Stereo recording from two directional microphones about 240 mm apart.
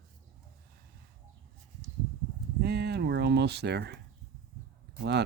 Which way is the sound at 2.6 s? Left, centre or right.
Right.